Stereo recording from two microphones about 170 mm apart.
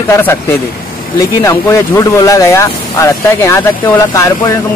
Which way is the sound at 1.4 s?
15° left (ahead or behind).